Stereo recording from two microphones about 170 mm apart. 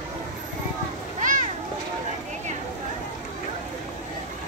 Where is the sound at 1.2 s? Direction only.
45° right (ahead or behind).